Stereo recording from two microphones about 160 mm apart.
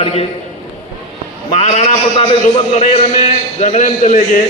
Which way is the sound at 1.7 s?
35° left (ahead or behind).